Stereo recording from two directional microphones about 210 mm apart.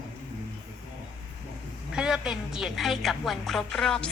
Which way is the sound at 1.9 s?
5° right (ahead or behind).